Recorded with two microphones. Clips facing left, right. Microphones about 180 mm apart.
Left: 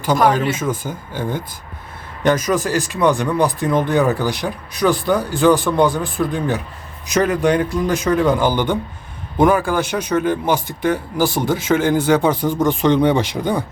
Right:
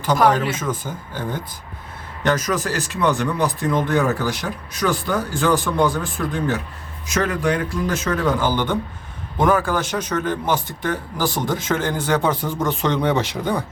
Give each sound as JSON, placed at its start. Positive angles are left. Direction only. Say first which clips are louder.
{"t": 0.5, "sound": "speech", "louder": "left 3 dB", "side_deg": 10}
{"t": 2.2, "sound": "speech", "louder": "left 4 dB", "side_deg": 10}